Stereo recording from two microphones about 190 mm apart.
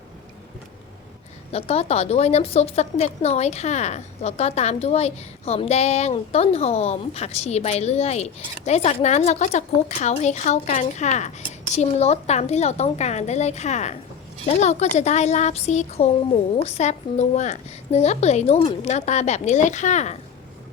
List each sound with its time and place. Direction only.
1.5 s a woman's voice: 30° left (ahead or behind)